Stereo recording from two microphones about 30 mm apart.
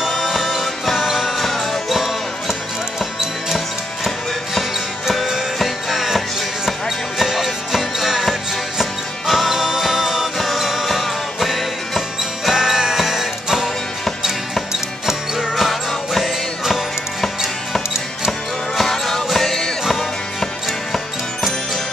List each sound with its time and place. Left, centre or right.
0.0 s music: centre
1.4 s music: centre
1.9 s music: centre
7.2 s music: centre
10.3 s music: centre
12.4 s music: centre
15.3 s music: centre
18.8 s music: centre